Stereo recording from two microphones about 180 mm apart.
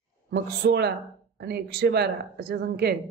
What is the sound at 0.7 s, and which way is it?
A woman's voice, 65° right (ahead or behind).